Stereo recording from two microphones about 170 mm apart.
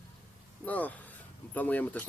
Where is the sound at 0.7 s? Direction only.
10° left (ahead or behind).